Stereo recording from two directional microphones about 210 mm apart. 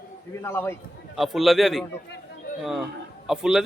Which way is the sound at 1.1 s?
Centre (ahead or behind).